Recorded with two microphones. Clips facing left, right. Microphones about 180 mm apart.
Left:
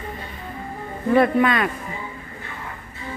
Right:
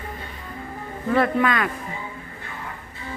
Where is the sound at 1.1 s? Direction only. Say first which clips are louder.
Left 3 dB; 20° left (ahead or behind).